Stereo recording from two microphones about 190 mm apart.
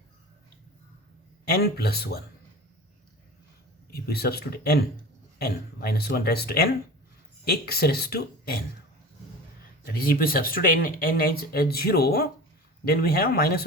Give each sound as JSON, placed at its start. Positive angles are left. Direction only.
{"t": 1.5, "sound": "speech", "side_deg": 55}
{"t": 3.9, "sound": "speech", "side_deg": 55}
{"t": 10.0, "sound": "speech", "side_deg": 50}